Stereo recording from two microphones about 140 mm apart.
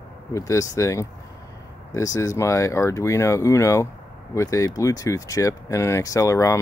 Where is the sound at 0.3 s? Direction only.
25° left (ahead or behind).